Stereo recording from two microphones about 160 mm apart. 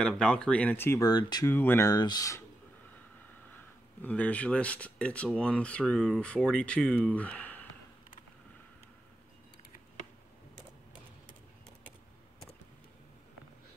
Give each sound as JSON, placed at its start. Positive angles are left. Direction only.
{"t": 0.0, "sound": "speech", "side_deg": 5}
{"t": 1.5, "sound": "speech", "side_deg": 15}
{"t": 4.0, "sound": "speech", "side_deg": 10}